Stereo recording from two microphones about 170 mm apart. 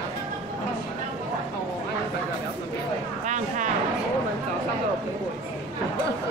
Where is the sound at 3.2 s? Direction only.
45° right (ahead or behind).